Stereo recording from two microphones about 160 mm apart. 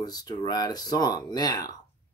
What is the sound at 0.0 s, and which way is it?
Speech, 25° left (ahead or behind).